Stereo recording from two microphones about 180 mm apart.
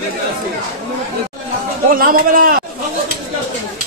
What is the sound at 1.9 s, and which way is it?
Speech, 50° right (ahead or behind).